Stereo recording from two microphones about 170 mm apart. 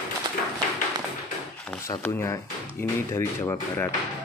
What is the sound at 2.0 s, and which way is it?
Speech, 15° left (ahead or behind).